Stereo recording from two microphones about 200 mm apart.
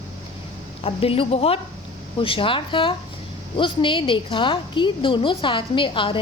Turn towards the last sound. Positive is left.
turn(degrees=25)  # may be behind; listen again after turning